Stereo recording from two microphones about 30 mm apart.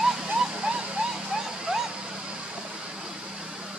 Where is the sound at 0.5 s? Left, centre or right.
Right.